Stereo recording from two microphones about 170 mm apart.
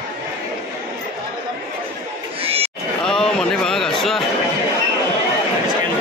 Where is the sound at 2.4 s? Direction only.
35° right (ahead or behind).